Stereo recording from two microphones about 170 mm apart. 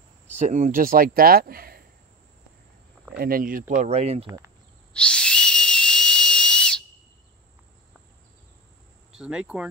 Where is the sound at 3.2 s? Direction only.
55° right (ahead or behind); by 4.2 s 40° right (ahead or behind).